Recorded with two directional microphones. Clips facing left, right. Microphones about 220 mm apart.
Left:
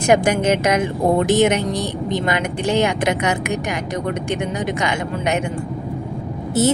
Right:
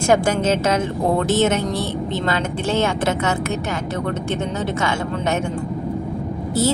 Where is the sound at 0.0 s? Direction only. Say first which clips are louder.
Left 1 dB; 15° left (ahead or behind).